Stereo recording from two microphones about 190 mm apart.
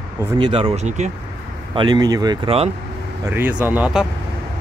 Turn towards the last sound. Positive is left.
turn(degrees=-5)  # may be behind; listen again after turning